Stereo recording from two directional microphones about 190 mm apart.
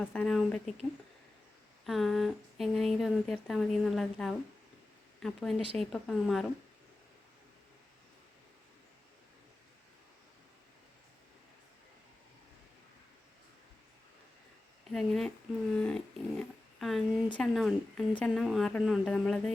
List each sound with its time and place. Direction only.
0.0 s speech: 5° left (ahead or behind)
1.8 s speech: centre (ahead or behind)
14.9 s speech: centre (ahead or behind)
15.7 s dog: 5° left (ahead or behind)
17.3 s speech: centre (ahead or behind)